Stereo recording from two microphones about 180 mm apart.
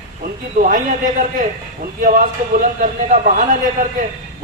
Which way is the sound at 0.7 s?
45° right (ahead or behind).